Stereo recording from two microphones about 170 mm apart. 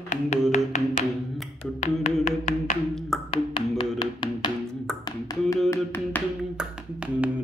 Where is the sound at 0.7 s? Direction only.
40° left (ahead or behind).